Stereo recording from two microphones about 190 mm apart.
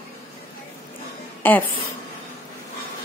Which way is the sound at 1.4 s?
10° left (ahead or behind).